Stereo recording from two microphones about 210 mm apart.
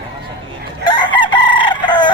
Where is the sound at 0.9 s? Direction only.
20° left (ahead or behind).